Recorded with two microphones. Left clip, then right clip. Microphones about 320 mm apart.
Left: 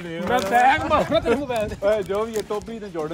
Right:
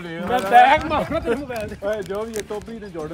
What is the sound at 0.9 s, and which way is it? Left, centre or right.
Speech, left.